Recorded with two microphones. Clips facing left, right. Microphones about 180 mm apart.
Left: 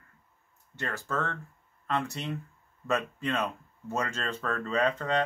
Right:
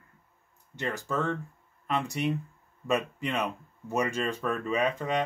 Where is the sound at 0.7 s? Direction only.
15° right (ahead or behind).